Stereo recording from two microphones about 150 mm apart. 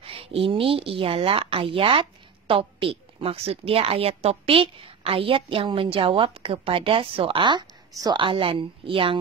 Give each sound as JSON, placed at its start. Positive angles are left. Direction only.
{"t": 0.0, "sound": "a woman's voice", "side_deg": -40}